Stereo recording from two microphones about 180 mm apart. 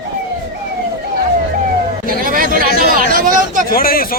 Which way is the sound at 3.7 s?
55° left (ahead or behind).